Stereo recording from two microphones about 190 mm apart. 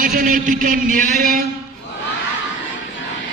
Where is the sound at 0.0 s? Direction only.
45° right (ahead or behind).